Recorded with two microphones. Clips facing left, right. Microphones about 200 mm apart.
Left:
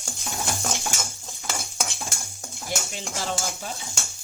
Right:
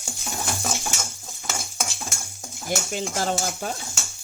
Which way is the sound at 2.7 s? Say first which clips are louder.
Right 4 dB; 50° right (ahead or behind).